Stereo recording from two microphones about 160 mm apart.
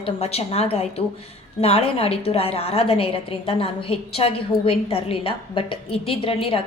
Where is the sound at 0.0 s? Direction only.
40° left (ahead or behind).